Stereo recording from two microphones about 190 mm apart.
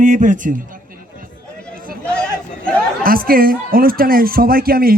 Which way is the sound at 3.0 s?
50° right (ahead or behind).